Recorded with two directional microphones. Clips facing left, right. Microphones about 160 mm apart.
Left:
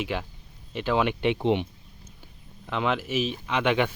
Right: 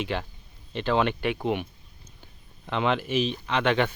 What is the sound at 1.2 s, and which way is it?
Speech, 25° left (ahead or behind).